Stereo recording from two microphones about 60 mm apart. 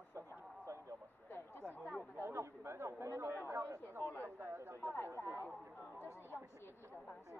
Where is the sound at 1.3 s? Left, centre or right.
Left.